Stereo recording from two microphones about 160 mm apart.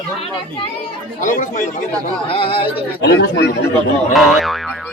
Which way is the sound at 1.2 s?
55° left (ahead or behind).